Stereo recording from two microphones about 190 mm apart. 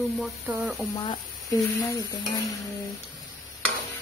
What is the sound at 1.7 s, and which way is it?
Stir, 20° left (ahead or behind).